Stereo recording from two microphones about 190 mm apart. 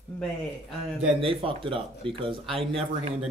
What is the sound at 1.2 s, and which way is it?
Speech, 30° right (ahead or behind).